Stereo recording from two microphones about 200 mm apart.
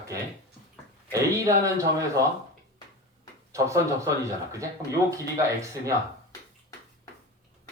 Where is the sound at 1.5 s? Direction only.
15° right (ahead or behind).